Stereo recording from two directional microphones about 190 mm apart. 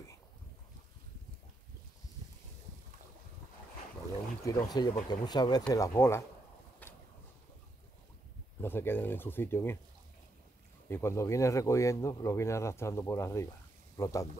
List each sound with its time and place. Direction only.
4.7 s speech: 20° left (ahead or behind)
6.8 s a sound: 10° left (ahead or behind)
8.5 s speech: 10° left (ahead or behind)
10.9 s speech: 15° left (ahead or behind)